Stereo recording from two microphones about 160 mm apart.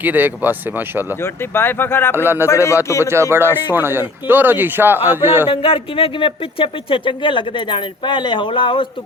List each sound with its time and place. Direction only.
0.0 s speech: 10° right (ahead or behind)
1.2 s speech: 15° left (ahead or behind)
2.1 s speech: 15° right (ahead or behind)
2.5 s speech: 20° left (ahead or behind)
3.0 s speech: 15° right (ahead or behind)
5.5 s speech: 35° left (ahead or behind)